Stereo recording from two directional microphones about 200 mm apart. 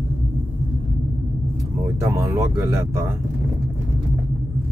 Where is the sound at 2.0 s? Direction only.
15° right (ahead or behind).